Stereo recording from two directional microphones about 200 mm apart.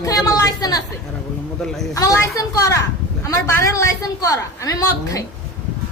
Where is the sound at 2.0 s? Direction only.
15° left (ahead or behind).